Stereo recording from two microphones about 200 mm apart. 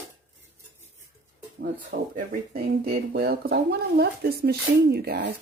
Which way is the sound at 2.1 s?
50° right (ahead or behind).